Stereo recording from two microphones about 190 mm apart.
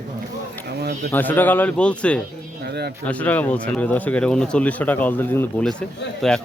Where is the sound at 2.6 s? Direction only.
60° right (ahead or behind).